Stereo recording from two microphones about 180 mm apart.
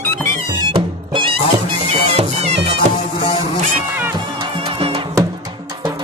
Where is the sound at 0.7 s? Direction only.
30° right (ahead or behind).